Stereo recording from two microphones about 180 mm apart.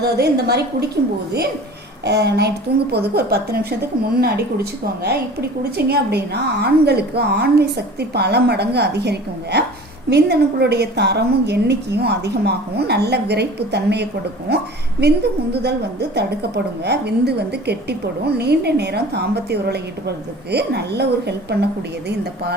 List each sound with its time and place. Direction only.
0.0 s a woman's voice: 65° right (ahead or behind)
2.0 s a woman's voice: 70° right (ahead or behind)